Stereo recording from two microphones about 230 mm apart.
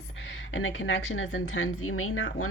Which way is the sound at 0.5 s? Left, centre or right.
Left.